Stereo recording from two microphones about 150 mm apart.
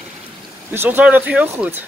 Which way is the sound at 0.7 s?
15° right (ahead or behind).